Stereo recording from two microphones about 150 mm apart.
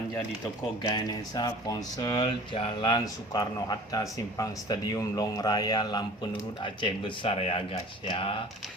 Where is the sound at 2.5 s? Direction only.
35° left (ahead or behind).